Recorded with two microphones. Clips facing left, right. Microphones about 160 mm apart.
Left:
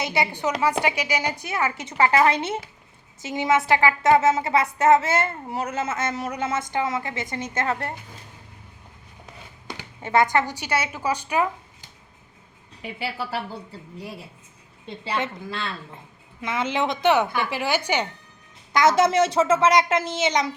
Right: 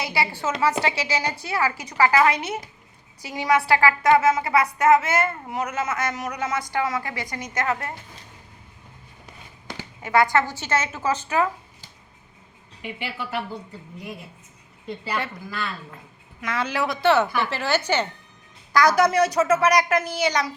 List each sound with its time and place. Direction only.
0.0 s a woman's voice: 20° left (ahead or behind)
10.0 s a woman's voice: 20° left (ahead or behind)
12.8 s a woman's voice: 35° left (ahead or behind)
14.8 s a woman's voice: 25° left (ahead or behind)